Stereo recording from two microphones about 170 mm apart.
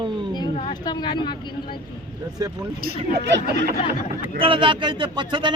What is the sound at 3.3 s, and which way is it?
Snicker, 65° right (ahead or behind).